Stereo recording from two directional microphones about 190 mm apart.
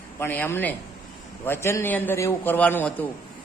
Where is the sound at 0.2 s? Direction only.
10° left (ahead or behind).